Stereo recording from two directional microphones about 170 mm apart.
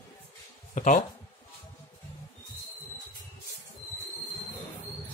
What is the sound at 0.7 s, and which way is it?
Speech, 50° left (ahead or behind).